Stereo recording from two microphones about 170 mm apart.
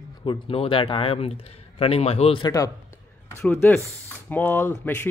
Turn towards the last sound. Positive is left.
turn(degrees=10)  # may be behind; listen again after turning